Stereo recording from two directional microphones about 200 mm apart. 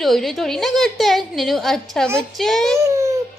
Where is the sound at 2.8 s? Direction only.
15° right (ahead or behind).